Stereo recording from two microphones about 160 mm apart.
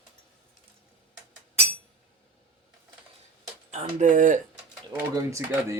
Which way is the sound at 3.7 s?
50° right (ahead or behind).